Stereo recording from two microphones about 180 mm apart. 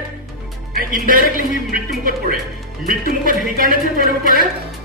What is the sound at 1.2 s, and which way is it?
Speech, 50° left (ahead or behind).